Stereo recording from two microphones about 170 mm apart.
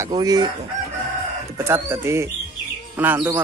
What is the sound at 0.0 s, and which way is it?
Speech, 20° right (ahead or behind).